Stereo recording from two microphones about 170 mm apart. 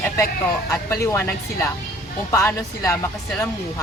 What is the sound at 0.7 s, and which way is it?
Speech, 15° left (ahead or behind).